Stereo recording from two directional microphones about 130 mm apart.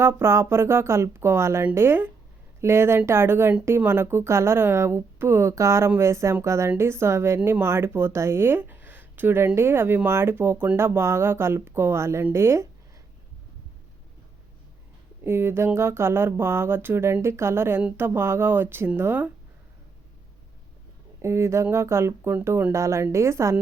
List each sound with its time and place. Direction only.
0.0 s speech: 20° right (ahead or behind)
15.2 s speech: 20° right (ahead or behind)
21.2 s speech: 20° right (ahead or behind)